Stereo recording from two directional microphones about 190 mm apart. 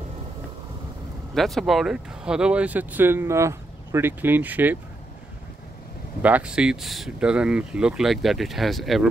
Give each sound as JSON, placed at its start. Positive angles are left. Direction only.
{"t": 1.3, "sound": "speech", "side_deg": 0}
{"t": 6.2, "sound": "speech", "side_deg": -5}